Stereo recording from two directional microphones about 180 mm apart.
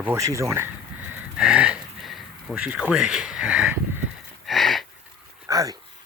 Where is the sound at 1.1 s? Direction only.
5° right (ahead or behind).